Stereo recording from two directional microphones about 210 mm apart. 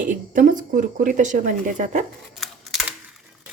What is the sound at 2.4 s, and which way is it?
Camera, centre (ahead or behind).